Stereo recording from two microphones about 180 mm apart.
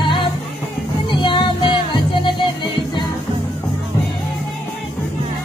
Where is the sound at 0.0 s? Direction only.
25° left (ahead or behind).